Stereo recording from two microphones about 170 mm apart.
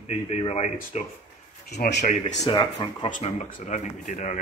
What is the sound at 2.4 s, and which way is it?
Speech, 25° left (ahead or behind).